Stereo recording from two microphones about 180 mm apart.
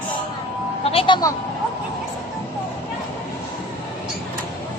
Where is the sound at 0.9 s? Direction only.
30° left (ahead or behind).